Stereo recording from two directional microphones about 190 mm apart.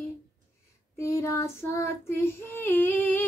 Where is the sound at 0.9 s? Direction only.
15° left (ahead or behind).